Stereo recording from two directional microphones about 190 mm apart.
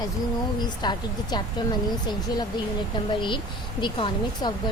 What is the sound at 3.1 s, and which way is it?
Speech, 25° left (ahead or behind).